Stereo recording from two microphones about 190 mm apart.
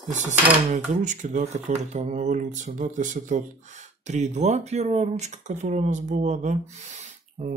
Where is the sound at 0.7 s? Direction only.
40° right (ahead or behind).